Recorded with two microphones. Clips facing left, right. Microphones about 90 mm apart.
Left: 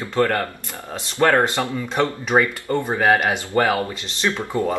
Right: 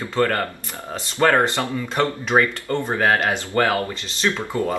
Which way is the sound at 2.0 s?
15° left (ahead or behind).